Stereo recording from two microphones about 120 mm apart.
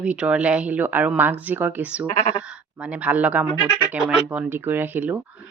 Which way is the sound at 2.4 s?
10° right (ahead or behind).